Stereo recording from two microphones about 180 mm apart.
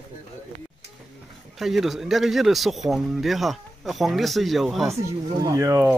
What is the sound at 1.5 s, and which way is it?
Speech, centre (ahead or behind).